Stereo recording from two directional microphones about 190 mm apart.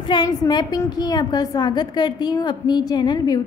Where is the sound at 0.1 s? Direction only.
20° left (ahead or behind).